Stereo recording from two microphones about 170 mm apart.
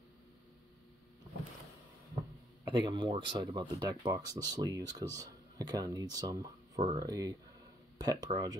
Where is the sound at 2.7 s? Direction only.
30° right (ahead or behind).